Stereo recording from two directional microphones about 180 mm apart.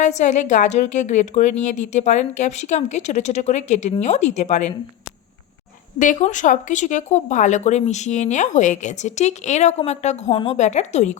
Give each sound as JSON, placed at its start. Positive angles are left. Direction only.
{"t": 0.0, "sound": "speech", "side_deg": 40}
{"t": 6.0, "sound": "speech", "side_deg": 45}